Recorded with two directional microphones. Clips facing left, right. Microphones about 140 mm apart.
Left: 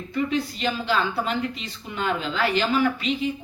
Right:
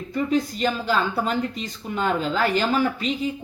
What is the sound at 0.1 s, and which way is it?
Speech, 40° right (ahead or behind).